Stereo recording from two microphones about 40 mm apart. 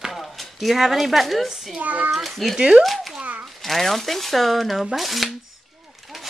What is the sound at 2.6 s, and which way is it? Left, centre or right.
Speech, centre.